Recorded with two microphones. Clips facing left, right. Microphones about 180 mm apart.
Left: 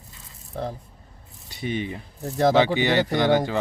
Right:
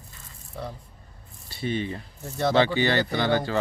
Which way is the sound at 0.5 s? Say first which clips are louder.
Left 5 dB; 35° left (ahead or behind).